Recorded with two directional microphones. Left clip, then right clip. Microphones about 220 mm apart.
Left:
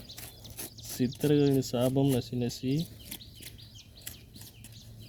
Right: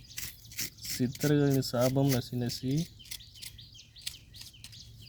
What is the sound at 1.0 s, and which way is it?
Speech, 35° right (ahead or behind).